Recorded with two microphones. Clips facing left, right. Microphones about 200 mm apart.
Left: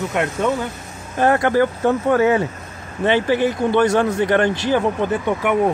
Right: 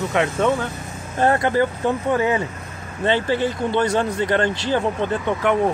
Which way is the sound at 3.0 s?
10° left (ahead or behind).